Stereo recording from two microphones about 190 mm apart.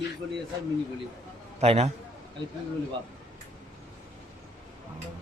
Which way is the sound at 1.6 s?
35° right (ahead or behind).